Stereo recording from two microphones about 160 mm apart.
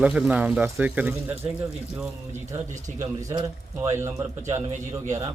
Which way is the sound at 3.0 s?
20° right (ahead or behind).